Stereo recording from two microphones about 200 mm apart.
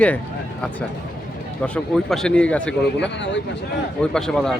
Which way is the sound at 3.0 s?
60° left (ahead or behind).